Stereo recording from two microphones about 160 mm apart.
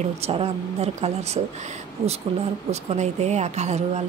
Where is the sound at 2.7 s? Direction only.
45° right (ahead or behind).